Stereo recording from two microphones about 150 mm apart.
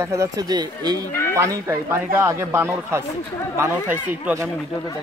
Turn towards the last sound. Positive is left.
turn(degrees=-10)  # may be behind; listen again after turning